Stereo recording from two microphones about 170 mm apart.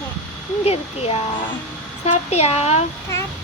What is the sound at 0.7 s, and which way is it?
Speech, 35° left (ahead or behind).